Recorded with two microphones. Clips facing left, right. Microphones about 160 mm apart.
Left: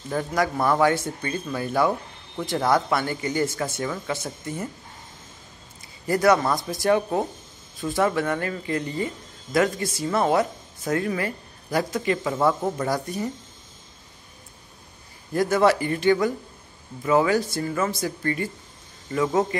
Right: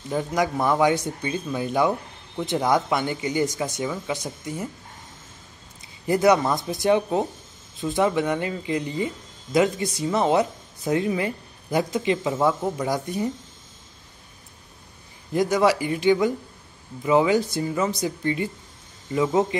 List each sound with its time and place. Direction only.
0.1 s speech: 15° right (ahead or behind)
6.0 s speech: 20° right (ahead or behind)
15.3 s speech: 15° right (ahead or behind)